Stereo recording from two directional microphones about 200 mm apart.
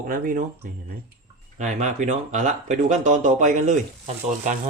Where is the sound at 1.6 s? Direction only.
35° right (ahead or behind).